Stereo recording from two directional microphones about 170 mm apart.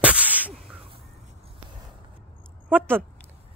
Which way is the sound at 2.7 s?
10° right (ahead or behind).